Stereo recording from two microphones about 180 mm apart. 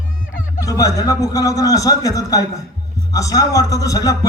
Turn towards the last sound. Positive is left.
turn(degrees=20)  # may be behind; listen again after turning